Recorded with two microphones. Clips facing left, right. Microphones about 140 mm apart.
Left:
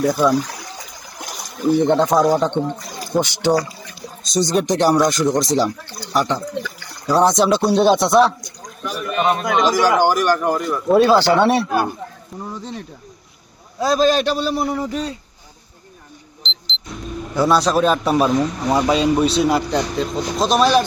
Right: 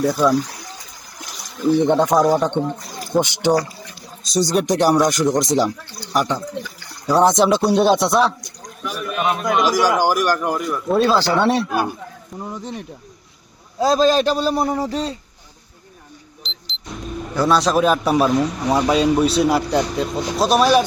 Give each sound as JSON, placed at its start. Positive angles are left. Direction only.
{"t": 0.0, "sound": "a man's voice", "side_deg": 0}
{"t": 1.9, "sound": "speech", "side_deg": -10}
{"t": 2.2, "sound": "a man's voice", "side_deg": 0}
{"t": 2.5, "sound": "speech", "side_deg": -10}
{"t": 4.2, "sound": "speech", "side_deg": -5}
{"t": 7.7, "sound": "a man's voice", "side_deg": -5}
{"t": 11.1, "sound": "speech", "side_deg": 65}
{"t": 11.7, "sound": "speech", "side_deg": -10}
{"t": 13.7, "sound": "a man's voice", "side_deg": -30}
{"t": 16.4, "sound": "vehicle", "side_deg": -5}
{"t": 17.3, "sound": "a man's voice", "side_deg": 5}